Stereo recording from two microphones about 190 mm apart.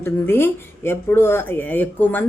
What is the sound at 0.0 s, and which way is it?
Speech, 10° left (ahead or behind).